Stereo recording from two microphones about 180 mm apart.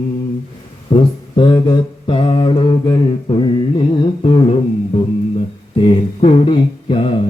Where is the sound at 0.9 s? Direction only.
25° left (ahead or behind).